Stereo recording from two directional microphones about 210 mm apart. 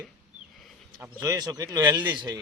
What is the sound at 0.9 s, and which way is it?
Speech, 15° right (ahead or behind).